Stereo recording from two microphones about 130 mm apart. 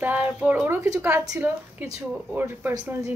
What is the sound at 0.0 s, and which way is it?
Speech, 15° right (ahead or behind).